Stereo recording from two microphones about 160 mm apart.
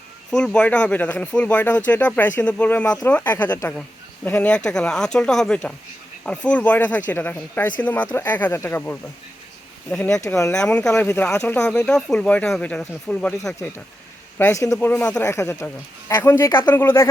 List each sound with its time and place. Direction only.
0.3 s speech: 5° left (ahead or behind)
10.2 s speech: 20° left (ahead or behind)
10.5 s speech: 5° left (ahead or behind)
10.9 s speech: 15° left (ahead or behind)
14.3 s speech: 15° left (ahead or behind)